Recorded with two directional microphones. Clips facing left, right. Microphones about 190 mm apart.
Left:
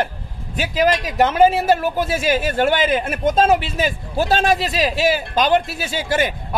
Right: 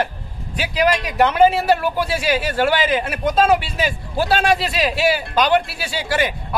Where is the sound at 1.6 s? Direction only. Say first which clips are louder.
Left 1 dB; 45° left (ahead or behind).